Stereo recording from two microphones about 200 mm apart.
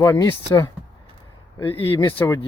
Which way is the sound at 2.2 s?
15° left (ahead or behind).